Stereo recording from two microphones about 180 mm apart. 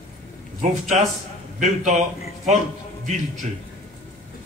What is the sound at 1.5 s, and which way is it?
Speech, 40° right (ahead or behind).